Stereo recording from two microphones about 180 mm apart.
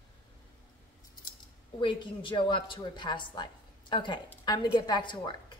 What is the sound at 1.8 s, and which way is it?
A woman's voice, 25° left (ahead or behind).